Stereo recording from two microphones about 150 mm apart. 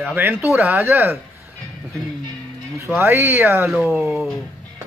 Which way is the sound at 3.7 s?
Centre (ahead or behind).